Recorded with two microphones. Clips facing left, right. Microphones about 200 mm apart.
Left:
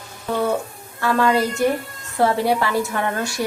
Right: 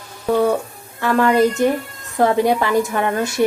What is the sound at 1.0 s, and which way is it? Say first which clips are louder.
A woman's voice: right 4 dB; 15° right (ahead or behind).